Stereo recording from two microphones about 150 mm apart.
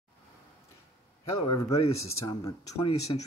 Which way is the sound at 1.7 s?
40° left (ahead or behind).